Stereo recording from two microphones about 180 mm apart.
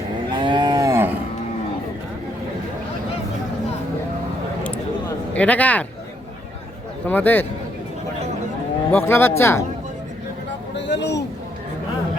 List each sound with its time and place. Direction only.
0.3 s moo: 25° right (ahead or behind)
5.3 s speech: 10° left (ahead or behind)
7.1 s speech: 10° left (ahead or behind)
8.9 s speech: 10° left (ahead or behind)
10.8 s a sound: 75° left (ahead or behind)